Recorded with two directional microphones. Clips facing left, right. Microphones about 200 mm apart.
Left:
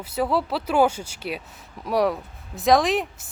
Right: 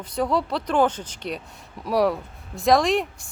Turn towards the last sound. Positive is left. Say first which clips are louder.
# even
turn(degrees=0)  # may be behind; listen again after turning